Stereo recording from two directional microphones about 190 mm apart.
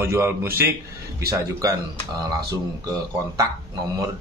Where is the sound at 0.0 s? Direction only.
15° right (ahead or behind).